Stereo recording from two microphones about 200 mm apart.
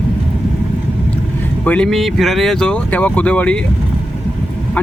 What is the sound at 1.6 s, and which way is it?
Speech, 5° left (ahead or behind).